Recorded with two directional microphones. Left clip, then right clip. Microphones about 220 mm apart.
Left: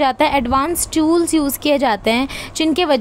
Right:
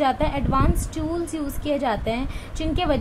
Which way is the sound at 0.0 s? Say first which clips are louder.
Left 7 dB; 45° left (ahead or behind).